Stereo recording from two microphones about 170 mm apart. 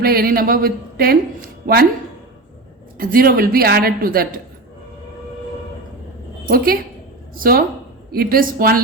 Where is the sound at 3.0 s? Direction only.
60° right (ahead or behind).